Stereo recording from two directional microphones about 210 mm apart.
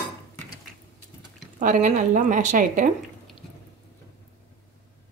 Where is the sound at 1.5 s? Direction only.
40° right (ahead or behind).